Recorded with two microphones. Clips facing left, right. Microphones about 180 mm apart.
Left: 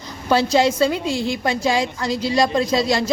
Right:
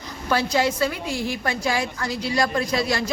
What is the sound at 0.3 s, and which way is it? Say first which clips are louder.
A woman's voice: left 5 dB; 25° left (ahead or behind).